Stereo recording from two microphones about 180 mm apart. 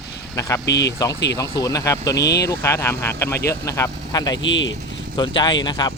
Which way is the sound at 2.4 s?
15° left (ahead or behind).